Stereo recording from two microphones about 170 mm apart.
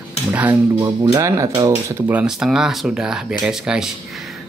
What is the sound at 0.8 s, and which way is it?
Speech, 25° right (ahead or behind).